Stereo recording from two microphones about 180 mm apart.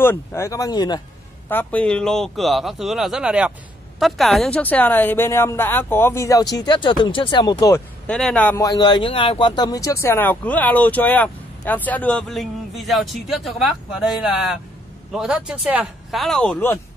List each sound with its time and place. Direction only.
0.0 s speech: 15° left (ahead or behind)
1.5 s speech: 10° left (ahead or behind)
8.1 s speech: 5° left (ahead or behind)
8.6 s speech: 25° left (ahead or behind); by 14.1 s centre (ahead or behind)
15.1 s speech: 5° right (ahead or behind)